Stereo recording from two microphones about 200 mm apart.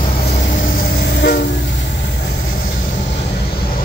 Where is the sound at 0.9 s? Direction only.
55° left (ahead or behind).